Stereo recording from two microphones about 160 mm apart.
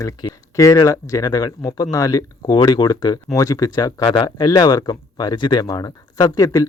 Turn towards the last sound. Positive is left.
turn(degrees=20)  # may be behind; listen again after turning